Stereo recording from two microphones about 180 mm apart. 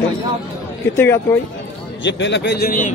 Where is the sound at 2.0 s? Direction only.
80° left; by 2.9 s 50° left (ahead or behind).